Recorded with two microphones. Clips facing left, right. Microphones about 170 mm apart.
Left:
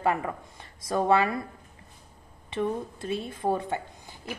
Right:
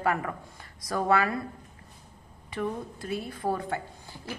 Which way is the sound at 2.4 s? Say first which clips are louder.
Left 3 dB; 25° left (ahead or behind).